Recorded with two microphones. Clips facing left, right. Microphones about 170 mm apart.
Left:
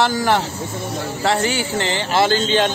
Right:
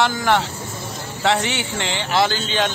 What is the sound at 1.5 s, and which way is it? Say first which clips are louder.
Speech: left 4 dB; 45° left (ahead or behind).